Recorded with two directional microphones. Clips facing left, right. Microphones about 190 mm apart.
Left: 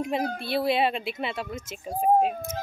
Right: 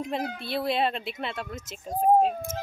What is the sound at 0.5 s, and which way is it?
Speech, 5° left (ahead or behind).